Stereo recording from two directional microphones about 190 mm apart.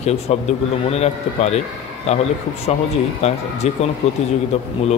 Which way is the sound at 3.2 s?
35° left (ahead or behind).